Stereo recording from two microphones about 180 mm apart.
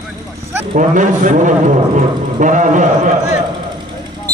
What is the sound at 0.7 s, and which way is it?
A man's voice, 45° right (ahead or behind).